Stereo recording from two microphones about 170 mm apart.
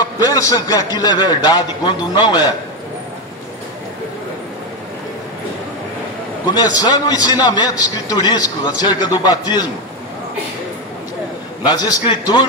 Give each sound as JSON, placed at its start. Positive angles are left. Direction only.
{"t": 0.0, "sound": "a man's voice", "side_deg": 20}
{"t": 6.5, "sound": "a man's voice", "side_deg": 20}
{"t": 11.6, "sound": "a man's voice", "side_deg": 20}